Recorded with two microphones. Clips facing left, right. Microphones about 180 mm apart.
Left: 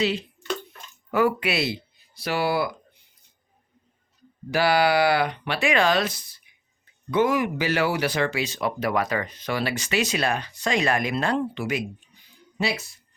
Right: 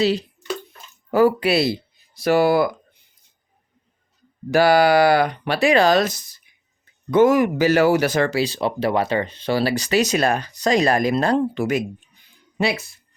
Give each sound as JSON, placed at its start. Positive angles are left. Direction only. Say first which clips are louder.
{"t": 0.0, "sound": "speech", "louder": "right 5 dB", "side_deg": -35}
{"t": 4.5, "sound": "speech", "louder": "right 6 dB", "side_deg": -45}